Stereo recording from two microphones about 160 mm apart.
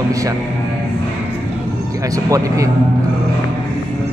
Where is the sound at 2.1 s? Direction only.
20° right (ahead or behind).